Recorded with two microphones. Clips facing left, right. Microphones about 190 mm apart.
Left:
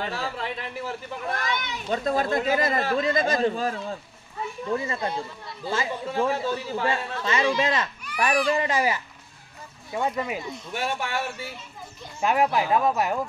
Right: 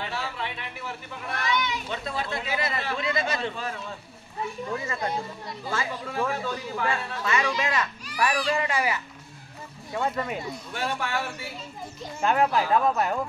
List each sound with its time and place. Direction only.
0.0 s speech: 40° left (ahead or behind)
4.7 s speech: 30° left (ahead or behind)
9.9 s speech: 15° left (ahead or behind)
12.2 s speech: 10° left (ahead or behind)